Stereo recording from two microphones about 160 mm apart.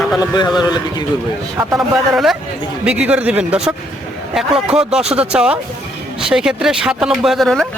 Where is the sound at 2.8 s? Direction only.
5° right (ahead or behind).